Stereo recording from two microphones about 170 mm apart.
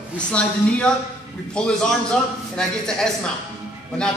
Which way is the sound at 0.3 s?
5° left (ahead or behind).